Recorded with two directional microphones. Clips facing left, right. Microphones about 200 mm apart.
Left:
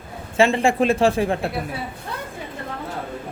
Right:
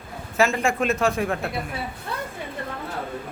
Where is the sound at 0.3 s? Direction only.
30° left (ahead or behind).